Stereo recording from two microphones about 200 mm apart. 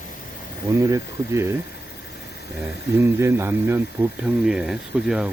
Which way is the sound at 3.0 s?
15° right (ahead or behind).